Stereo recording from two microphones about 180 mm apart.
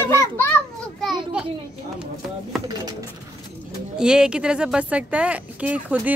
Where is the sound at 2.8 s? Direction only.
20° right (ahead or behind).